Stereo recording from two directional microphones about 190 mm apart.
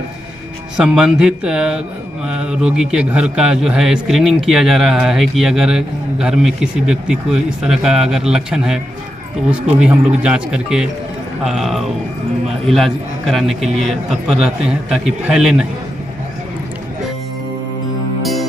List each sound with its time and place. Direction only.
0.7 s a man's voice: 5° right (ahead or behind)
18.2 s music: centre (ahead or behind)